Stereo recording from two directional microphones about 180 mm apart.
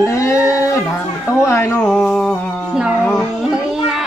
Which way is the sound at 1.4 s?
15° left (ahead or behind).